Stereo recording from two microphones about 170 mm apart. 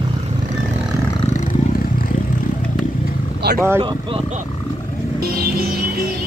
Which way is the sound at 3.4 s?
75° right (ahead or behind).